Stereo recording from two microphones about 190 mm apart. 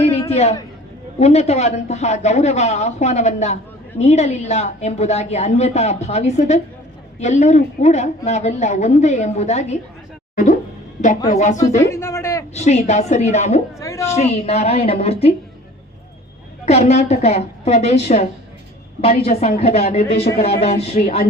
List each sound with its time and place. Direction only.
0.0 s a sound: 35° left (ahead or behind)
1.2 s a woman's voice: 35° left (ahead or behind)
10.3 s music: 40° left (ahead or behind)
11.3 s a woman's voice: 40° left (ahead or behind)
11.8 s a sound: 15° left (ahead or behind)
12.5 s a woman's voice: 35° left (ahead or behind)
13.7 s a sound: 15° left (ahead or behind)
14.2 s a woman's voice: 35° left (ahead or behind)
16.9 s a woman's voice: 35° left (ahead or behind)
20.1 s speech: 60° left (ahead or behind)
20.8 s a woman's voice: 35° left (ahead or behind)